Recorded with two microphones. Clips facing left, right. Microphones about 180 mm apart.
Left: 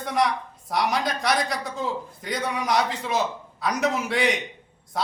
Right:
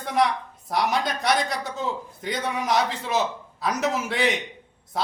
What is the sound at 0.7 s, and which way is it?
A man's voice, centre (ahead or behind).